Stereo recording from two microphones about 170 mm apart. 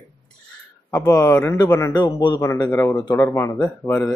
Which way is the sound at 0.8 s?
20° left (ahead or behind).